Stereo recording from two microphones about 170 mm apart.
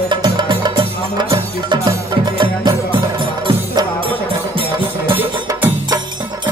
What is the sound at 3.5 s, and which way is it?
Music, 30° right (ahead or behind).